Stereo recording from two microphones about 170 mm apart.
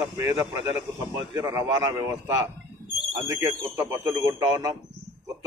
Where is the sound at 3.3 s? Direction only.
15° right (ahead or behind).